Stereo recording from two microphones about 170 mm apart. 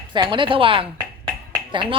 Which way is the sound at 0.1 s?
30° right (ahead or behind).